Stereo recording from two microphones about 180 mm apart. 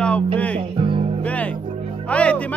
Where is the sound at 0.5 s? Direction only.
30° right (ahead or behind).